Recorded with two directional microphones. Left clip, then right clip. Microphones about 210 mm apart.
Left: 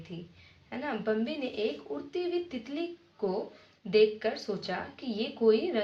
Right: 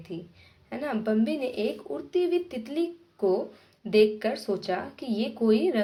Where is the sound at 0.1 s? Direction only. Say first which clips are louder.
Right 9 dB; 50° right (ahead or behind).